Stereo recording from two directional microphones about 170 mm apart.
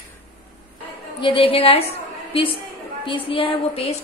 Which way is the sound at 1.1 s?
30° left (ahead or behind).